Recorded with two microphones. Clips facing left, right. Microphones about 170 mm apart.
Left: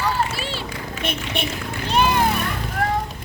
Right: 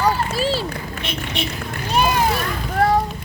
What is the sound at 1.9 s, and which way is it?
Vehicle, 10° right (ahead or behind).